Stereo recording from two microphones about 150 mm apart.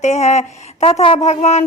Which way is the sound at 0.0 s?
50° left (ahead or behind).